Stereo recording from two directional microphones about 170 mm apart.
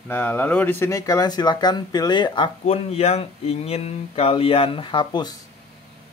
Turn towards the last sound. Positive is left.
turn(degrees=30)  # may be behind; listen again after turning